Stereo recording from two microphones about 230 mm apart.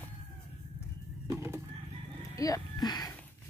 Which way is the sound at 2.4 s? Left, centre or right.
Centre.